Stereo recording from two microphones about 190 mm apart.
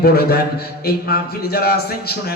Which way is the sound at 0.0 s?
55° left (ahead or behind).